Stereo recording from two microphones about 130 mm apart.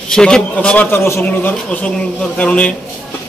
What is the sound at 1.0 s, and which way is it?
A man's voice, 20° left (ahead or behind).